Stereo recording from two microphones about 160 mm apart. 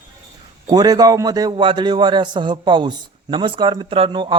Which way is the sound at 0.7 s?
25° right (ahead or behind).